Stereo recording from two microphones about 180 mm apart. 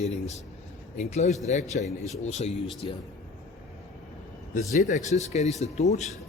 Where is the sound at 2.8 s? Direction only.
30° left (ahead or behind).